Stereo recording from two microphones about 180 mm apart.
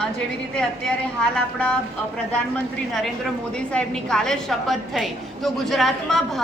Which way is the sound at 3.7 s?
5° left (ahead or behind).